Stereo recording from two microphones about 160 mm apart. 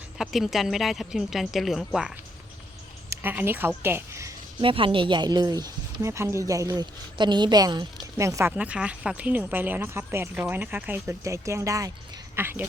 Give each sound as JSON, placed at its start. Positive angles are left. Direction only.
{"t": 0.2, "sound": "a woman's voice", "side_deg": 0}
{"t": 3.1, "sound": "a woman's voice", "side_deg": -15}
{"t": 4.6, "sound": "speech", "side_deg": -30}